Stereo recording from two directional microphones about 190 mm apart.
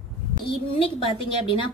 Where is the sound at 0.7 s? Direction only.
30° left (ahead or behind).